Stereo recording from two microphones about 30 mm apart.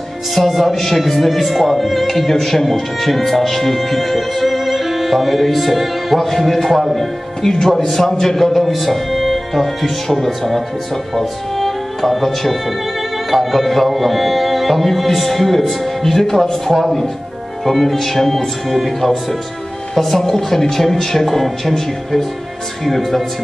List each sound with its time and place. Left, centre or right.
0.3 s speech: centre
7.4 s speech: centre